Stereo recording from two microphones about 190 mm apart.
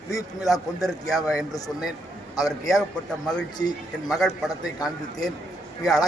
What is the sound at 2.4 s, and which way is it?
Speech, centre (ahead or behind).